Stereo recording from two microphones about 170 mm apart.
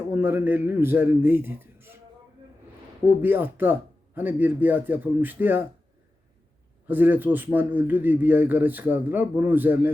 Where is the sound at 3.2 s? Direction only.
10° right (ahead or behind).